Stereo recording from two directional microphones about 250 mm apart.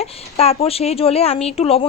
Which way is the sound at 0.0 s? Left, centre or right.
Left.